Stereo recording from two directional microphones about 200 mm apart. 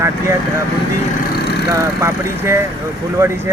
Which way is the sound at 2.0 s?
15° right (ahead or behind).